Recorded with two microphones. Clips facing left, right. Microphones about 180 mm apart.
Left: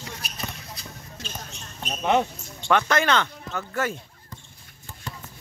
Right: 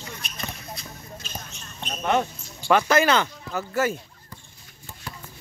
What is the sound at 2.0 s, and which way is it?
Basketball bounce, 15° left (ahead or behind).